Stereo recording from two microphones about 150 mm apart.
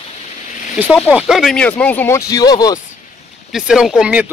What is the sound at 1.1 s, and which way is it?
Speech, 5° right (ahead or behind).